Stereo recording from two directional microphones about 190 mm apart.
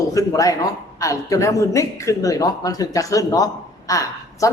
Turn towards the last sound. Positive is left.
turn(degrees=15)  # may be behind; listen again after turning